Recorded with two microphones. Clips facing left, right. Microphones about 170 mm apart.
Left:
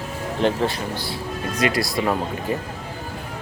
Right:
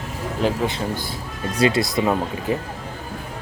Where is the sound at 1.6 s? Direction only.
25° right (ahead or behind).